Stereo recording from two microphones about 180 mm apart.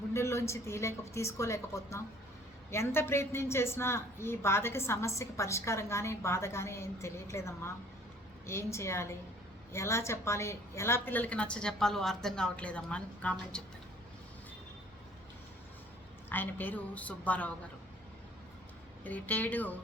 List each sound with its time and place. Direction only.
0.1 s a woman's voice: 15° left (ahead or behind)
16.3 s a woman's voice: 10° left (ahead or behind)
19.0 s a woman's voice: 10° left (ahead or behind)